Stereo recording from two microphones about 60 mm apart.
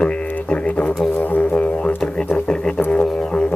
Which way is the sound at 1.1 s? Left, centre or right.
Left.